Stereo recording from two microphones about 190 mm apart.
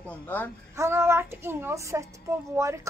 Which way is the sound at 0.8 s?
15° right (ahead or behind).